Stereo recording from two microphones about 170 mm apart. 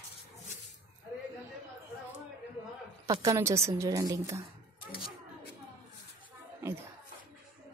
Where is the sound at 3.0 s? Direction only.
20° right (ahead or behind).